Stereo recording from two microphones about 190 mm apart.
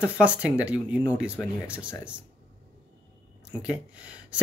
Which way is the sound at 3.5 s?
5° right (ahead or behind).